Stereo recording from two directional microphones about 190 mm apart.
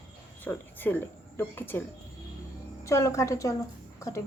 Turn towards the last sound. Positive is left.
turn(degrees=15)  # may be behind; listen again after turning